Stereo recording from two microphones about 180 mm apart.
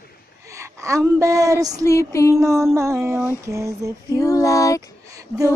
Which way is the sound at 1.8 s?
15° left (ahead or behind).